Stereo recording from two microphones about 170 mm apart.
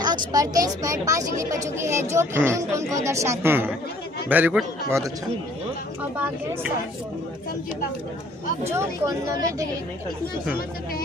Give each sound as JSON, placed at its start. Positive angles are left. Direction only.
{"t": 0.0, "sound": "a woman's voice", "side_deg": -25}
{"t": 8.7, "sound": "a woman's voice", "side_deg": -15}